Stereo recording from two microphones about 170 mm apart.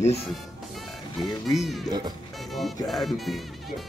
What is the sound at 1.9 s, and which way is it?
Speech, 25° right (ahead or behind).